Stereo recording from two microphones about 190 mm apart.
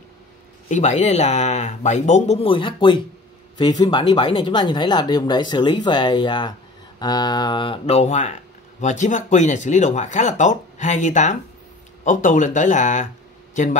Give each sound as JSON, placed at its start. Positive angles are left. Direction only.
{"t": 0.7, "sound": "speech", "side_deg": 40}